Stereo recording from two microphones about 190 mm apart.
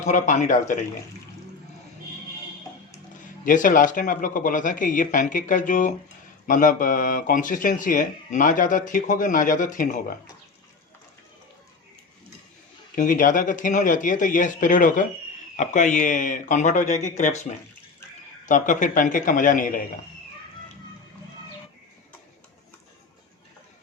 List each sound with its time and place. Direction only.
0.0 s speech: 40° left (ahead or behind)
3.4 s speech: 45° left (ahead or behind)
13.0 s speech: 45° left (ahead or behind)